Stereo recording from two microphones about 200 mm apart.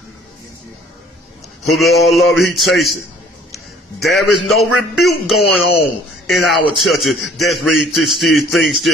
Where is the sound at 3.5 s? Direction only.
Centre (ahead or behind).